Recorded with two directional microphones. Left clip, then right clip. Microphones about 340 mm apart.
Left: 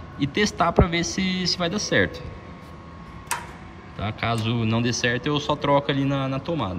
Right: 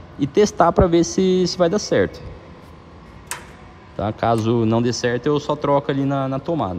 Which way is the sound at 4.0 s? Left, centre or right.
Centre.